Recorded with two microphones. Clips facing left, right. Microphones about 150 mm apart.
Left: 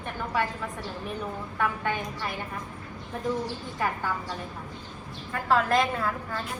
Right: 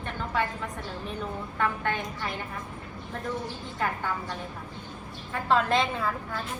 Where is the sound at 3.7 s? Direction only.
5° left (ahead or behind).